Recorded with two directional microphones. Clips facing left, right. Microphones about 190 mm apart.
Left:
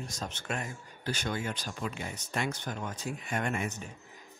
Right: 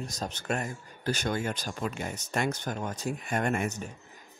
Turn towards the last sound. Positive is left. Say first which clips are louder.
# right 4 dB
turn(degrees=-45)  # may be behind; listen again after turning